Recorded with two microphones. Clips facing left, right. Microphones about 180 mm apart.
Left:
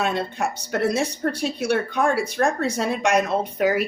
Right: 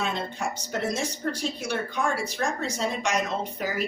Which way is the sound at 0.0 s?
65° left (ahead or behind).